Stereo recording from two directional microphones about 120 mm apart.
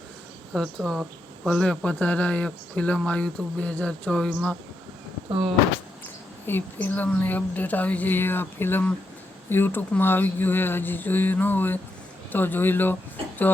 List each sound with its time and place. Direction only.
0.5 s a woman's voice: 5° left (ahead or behind)
6.4 s a woman's voice: 15° left (ahead or behind)